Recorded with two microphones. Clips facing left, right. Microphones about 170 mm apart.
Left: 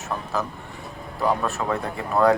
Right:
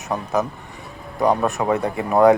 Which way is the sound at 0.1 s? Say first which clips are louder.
Right 6 dB; 20° right (ahead or behind).